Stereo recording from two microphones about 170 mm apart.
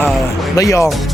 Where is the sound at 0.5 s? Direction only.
20° left (ahead or behind).